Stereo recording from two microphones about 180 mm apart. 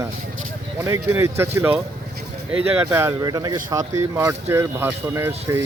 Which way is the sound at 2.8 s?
15° right (ahead or behind).